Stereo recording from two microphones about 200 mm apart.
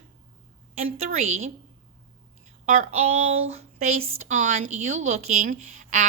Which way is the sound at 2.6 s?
40° right (ahead or behind).